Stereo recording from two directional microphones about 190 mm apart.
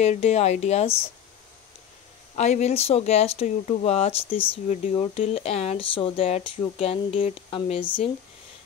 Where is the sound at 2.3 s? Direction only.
35° left (ahead or behind).